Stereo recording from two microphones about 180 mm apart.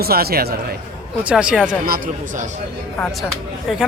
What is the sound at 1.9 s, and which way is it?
Speech, 55° right (ahead or behind).